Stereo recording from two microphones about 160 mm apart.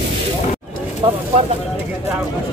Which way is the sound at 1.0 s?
35° right (ahead or behind).